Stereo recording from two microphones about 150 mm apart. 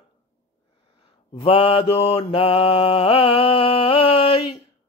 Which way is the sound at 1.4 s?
40° left (ahead or behind).